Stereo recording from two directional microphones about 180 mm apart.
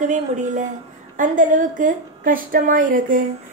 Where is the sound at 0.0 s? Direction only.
45° right (ahead or behind).